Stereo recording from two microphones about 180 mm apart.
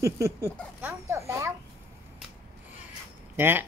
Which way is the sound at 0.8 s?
15° right (ahead or behind).